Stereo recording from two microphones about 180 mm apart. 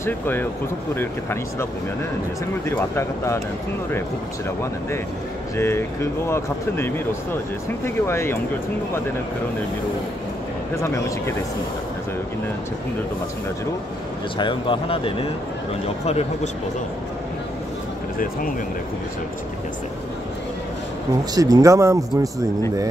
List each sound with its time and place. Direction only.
0.0 s speech: 10° left (ahead or behind)
5.6 s speech: 15° left (ahead or behind)
10.8 s speech: 15° left (ahead or behind)
14.4 s speech: 30° left (ahead or behind)
21.4 s speech: 20° right (ahead or behind)